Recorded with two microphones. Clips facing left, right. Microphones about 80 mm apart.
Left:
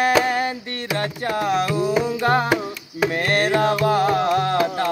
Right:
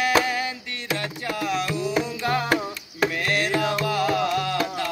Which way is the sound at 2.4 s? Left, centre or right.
Centre.